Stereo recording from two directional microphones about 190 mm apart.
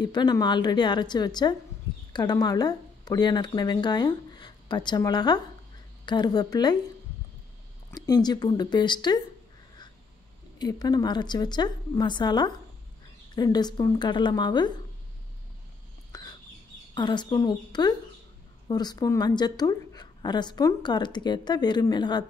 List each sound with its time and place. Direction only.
0.0 s a woman's voice: 20° left (ahead or behind)
7.9 s a woman's voice: 20° left (ahead or behind)
10.6 s a woman's voice: 20° left (ahead or behind)
16.1 s bird: 20° left (ahead or behind)
16.9 s a woman's voice: 25° left (ahead or behind)